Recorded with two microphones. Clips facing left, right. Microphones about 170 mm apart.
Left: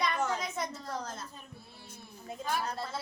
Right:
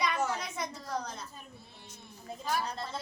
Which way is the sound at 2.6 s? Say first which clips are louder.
Left 1 dB; 5° left (ahead or behind).